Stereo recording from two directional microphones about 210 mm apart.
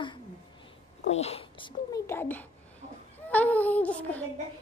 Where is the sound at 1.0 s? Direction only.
30° left (ahead or behind).